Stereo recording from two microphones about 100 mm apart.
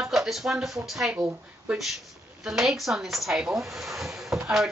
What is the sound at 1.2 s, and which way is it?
Speech, 20° right (ahead or behind).